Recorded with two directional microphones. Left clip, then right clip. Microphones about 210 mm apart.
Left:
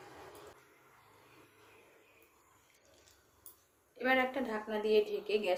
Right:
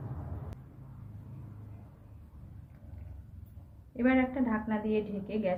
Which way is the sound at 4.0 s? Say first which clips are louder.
Right 2 dB; 40° left (ahead or behind).